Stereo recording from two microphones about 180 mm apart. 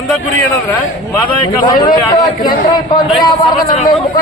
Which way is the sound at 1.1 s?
25° left (ahead or behind).